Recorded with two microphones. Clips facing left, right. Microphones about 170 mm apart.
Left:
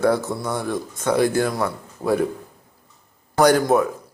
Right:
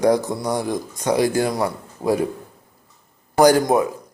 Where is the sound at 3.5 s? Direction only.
15° right (ahead or behind).